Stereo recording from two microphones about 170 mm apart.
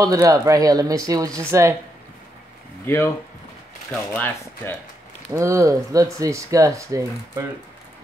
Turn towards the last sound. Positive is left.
turn(degrees=-20)  # may be behind; listen again after turning